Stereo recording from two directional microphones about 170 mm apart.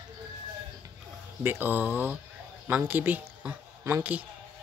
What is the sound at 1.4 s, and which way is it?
A woman's voice, 10° right (ahead or behind).